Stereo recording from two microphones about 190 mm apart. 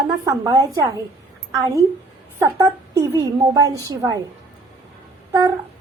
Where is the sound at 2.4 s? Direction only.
15° right (ahead or behind).